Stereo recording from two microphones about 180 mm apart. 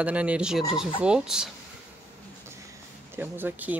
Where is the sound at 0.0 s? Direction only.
5° right (ahead or behind).